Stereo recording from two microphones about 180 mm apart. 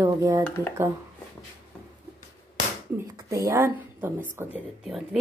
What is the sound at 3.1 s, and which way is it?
A woman's voice, 20° right (ahead or behind).